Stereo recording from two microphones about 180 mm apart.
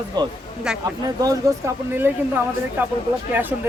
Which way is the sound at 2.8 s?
10° right (ahead or behind).